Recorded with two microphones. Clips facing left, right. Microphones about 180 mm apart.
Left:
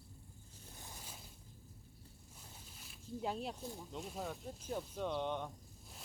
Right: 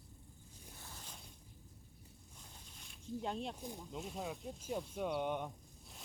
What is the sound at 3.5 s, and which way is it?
Speech, 15° right (ahead or behind).